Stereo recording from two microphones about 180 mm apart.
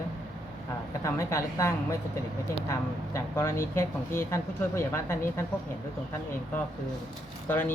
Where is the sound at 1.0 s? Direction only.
15° left (ahead or behind).